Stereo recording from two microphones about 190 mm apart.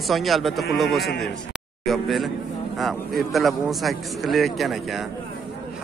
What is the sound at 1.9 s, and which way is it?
Speech, centre (ahead or behind).